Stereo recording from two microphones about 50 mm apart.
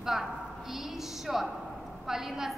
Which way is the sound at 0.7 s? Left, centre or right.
Centre.